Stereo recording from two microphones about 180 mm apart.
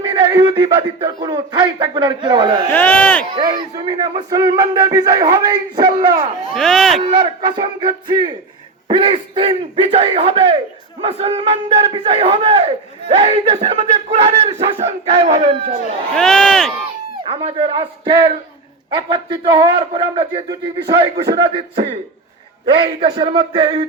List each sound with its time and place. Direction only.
0.0 s a man's voice: 20° right (ahead or behind)
2.7 s speech: 10° left (ahead or behind)
3.3 s a man's voice: 25° right (ahead or behind)
6.5 s speech: centre (ahead or behind)
7.0 s a man's voice: 25° right (ahead or behind)
16.1 s speech: 5° left (ahead or behind)
17.2 s a man's voice: 30° right (ahead or behind)